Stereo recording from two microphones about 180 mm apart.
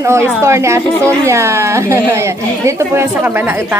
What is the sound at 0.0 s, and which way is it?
A woman's voice, 15° right (ahead or behind).